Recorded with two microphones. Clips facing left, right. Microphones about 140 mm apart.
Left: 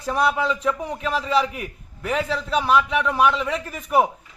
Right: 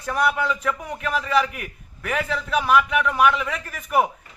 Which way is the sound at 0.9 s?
30° left (ahead or behind).